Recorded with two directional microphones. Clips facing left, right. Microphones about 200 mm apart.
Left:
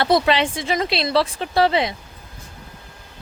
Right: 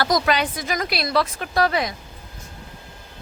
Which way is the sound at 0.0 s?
25° left (ahead or behind).